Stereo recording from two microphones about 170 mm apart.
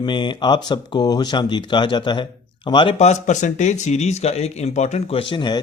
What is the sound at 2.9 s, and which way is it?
Speech, 40° left (ahead or behind).